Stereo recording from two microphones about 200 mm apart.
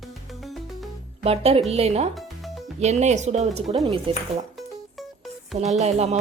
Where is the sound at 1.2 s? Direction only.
30° right (ahead or behind).